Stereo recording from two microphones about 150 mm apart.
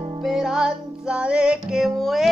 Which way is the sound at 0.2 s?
5° right (ahead or behind).